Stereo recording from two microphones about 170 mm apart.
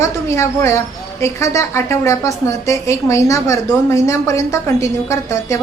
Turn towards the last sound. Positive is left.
turn(degrees=20)  # may be behind; listen again after turning